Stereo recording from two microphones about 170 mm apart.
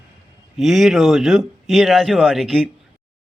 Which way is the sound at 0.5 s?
Centre (ahead or behind).